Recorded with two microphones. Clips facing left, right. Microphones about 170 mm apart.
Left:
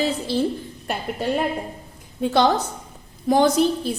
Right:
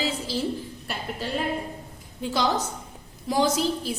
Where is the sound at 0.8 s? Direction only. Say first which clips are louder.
Left 9 dB; 55° left (ahead or behind).